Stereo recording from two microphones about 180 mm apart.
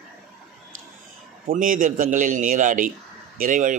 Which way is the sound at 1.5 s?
50° right (ahead or behind).